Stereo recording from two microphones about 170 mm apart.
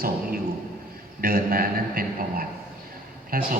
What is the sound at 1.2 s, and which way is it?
A man's voice, 60° right (ahead or behind).